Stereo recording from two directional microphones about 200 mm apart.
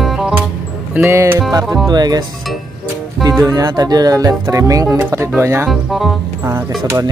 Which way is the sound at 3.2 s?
15° right (ahead or behind).